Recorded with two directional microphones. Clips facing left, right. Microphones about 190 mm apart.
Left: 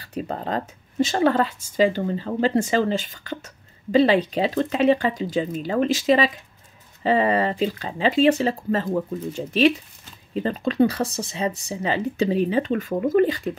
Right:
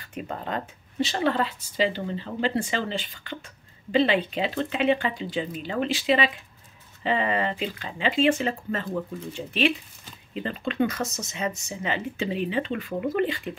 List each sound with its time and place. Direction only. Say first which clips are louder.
0.0 s speech: left 5 dB; 35° left (ahead or behind)